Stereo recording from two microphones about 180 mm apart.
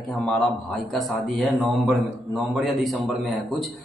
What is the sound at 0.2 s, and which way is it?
A man's voice, centre (ahead or behind).